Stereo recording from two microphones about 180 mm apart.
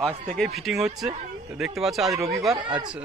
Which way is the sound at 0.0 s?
Centre (ahead or behind).